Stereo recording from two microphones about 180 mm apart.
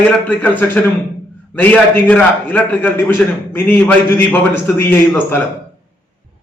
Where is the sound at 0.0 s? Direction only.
10° left (ahead or behind).